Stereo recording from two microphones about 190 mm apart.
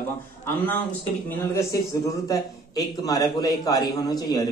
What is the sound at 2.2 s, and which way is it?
Speech, 20° left (ahead or behind).